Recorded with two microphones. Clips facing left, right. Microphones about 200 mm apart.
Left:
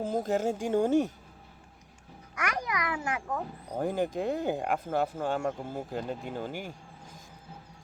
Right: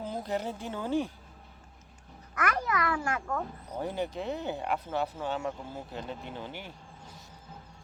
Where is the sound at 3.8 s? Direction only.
50° left (ahead or behind).